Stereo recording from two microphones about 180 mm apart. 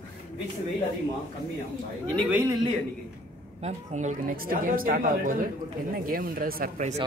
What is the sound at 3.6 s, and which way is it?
Speech, 40° right (ahead or behind).